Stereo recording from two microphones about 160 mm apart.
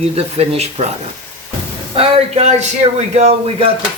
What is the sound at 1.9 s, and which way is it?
Speech, 40° right (ahead or behind).